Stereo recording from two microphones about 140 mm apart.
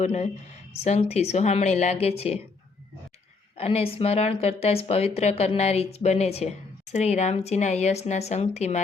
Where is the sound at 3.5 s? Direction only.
45° left (ahead or behind).